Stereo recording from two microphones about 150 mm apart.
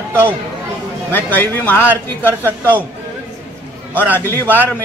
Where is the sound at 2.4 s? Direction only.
15° right (ahead or behind).